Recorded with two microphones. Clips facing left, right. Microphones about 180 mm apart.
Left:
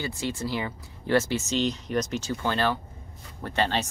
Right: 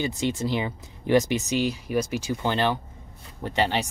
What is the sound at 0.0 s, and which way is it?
Speech, 20° right (ahead or behind).